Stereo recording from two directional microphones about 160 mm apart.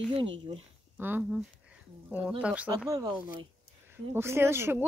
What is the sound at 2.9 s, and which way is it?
Speech, 25° right (ahead or behind).